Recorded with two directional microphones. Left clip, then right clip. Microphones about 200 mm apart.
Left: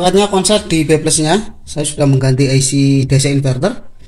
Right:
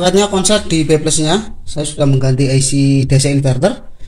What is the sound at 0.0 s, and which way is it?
Speech, 5° left (ahead or behind).